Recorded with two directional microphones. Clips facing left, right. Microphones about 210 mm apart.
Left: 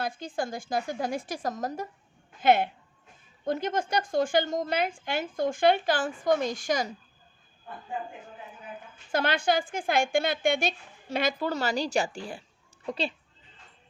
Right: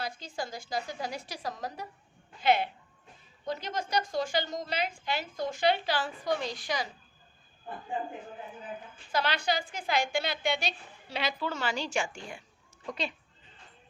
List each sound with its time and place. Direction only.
0.0 s a woman's voice: 50° left (ahead or behind)
9.1 s a woman's voice: 50° left (ahead or behind); by 13.1 s 30° left (ahead or behind)